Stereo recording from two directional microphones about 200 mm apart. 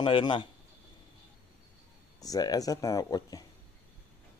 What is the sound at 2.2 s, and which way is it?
Speech, 20° left (ahead or behind).